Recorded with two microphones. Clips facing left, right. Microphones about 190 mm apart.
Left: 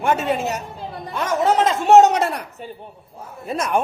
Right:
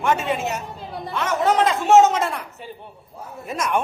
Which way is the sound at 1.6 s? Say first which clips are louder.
Left 3 dB; 35° left (ahead or behind).